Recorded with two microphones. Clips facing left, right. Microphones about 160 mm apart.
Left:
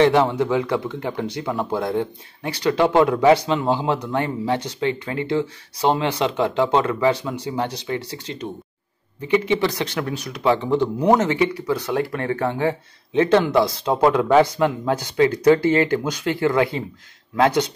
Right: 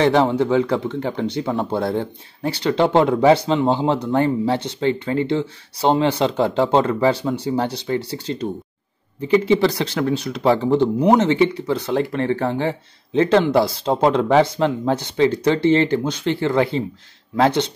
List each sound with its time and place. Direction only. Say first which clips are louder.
0.0 s speech: even; 30° right (ahead or behind)